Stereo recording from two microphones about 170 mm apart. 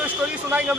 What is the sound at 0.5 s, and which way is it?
Speech, 5° right (ahead or behind).